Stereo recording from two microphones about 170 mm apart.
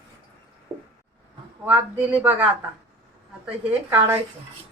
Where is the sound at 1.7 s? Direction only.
10° right (ahead or behind).